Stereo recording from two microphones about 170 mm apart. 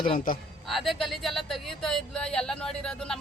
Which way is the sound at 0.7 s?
Centre (ahead or behind).